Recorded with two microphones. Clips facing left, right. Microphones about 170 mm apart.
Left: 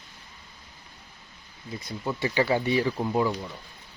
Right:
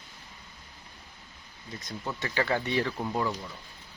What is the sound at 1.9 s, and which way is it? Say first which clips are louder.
Speech: left 6 dB; 10° left (ahead or behind).